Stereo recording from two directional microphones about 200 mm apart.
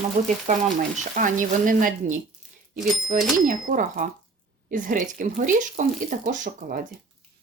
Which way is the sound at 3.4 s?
40° right (ahead or behind).